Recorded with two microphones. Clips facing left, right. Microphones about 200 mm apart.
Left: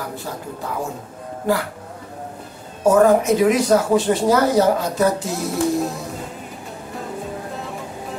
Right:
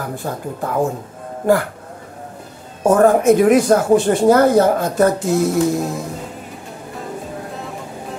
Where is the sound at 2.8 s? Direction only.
50° right (ahead or behind).